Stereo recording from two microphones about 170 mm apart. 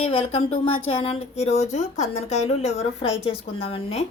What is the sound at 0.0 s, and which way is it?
Speech, 35° left (ahead or behind).